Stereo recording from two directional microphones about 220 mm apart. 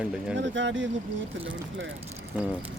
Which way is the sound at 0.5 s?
55° right (ahead or behind).